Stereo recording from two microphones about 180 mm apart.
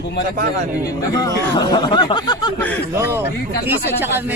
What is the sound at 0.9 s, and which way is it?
Speech, 20° left (ahead or behind).